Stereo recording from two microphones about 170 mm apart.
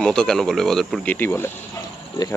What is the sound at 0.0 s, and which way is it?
Speech, 5° left (ahead or behind).